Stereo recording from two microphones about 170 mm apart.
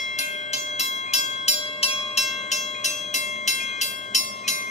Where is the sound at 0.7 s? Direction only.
40° left (ahead or behind).